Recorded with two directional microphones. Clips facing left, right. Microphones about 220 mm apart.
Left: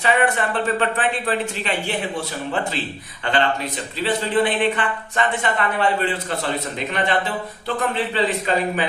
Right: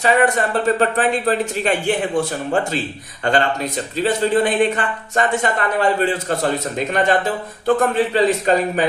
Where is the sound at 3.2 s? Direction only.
45° right (ahead or behind).